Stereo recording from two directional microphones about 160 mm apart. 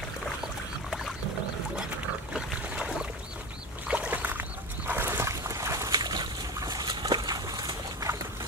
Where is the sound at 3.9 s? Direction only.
10° right (ahead or behind).